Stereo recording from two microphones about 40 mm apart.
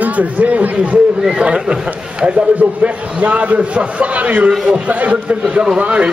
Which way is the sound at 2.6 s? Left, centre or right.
Right.